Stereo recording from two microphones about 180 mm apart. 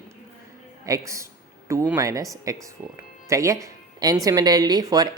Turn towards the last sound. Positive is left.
turn(degrees=-20)  # may be behind; listen again after turning